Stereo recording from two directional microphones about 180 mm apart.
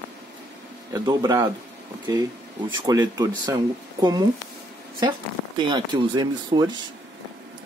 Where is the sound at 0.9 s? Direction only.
20° right (ahead or behind).